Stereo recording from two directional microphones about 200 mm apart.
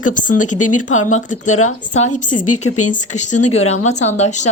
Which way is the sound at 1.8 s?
35° left (ahead or behind).